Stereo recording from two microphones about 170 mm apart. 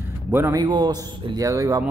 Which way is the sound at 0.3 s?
15° right (ahead or behind).